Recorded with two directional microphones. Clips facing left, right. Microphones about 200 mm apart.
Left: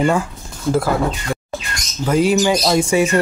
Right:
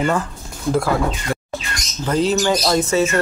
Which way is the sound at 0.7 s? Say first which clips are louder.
Left 1 dB; centre (ahead or behind).